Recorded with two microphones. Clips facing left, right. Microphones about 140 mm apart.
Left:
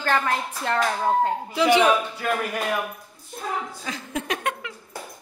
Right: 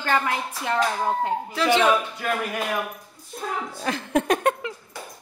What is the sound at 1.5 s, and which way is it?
Speech, 15° left (ahead or behind).